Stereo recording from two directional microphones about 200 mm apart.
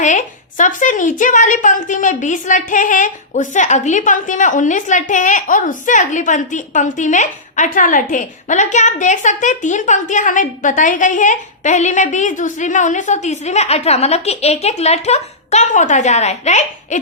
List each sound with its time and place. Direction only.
0.0 s a woman's voice: 40° left (ahead or behind)